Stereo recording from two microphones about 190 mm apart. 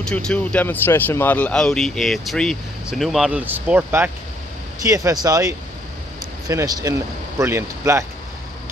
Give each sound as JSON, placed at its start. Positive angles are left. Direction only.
{"t": 0.0, "sound": "speech", "side_deg": 5}